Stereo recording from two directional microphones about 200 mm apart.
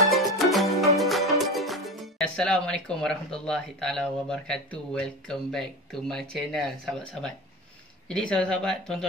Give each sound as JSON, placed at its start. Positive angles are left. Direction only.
{"t": 0.1, "sound": "music", "side_deg": 0}
{"t": 0.9, "sound": "speech", "side_deg": 0}